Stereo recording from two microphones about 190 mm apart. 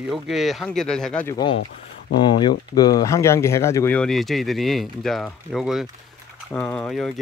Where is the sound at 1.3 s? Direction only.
25° left (ahead or behind).